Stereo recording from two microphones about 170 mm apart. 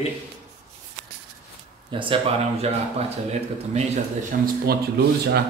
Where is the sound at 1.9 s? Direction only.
30° right (ahead or behind).